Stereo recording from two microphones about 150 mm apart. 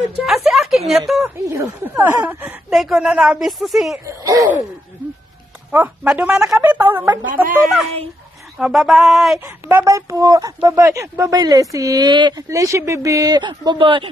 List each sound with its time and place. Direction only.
0.1 s a woman's voice: centre (ahead or behind)
1.2 s speech: 20° right (ahead or behind)
2.2 s speech: 5° right (ahead or behind)
4.0 s speech: 25° right (ahead or behind)
5.7 s speech: 10° right (ahead or behind)
8.5 s speech: centre (ahead or behind)
9.7 s speech: 20° right (ahead or behind)